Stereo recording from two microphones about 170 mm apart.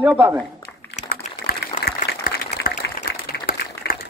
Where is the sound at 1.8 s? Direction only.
65° left (ahead or behind).